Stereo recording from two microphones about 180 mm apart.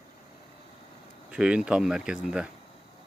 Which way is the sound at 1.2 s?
5° right (ahead or behind).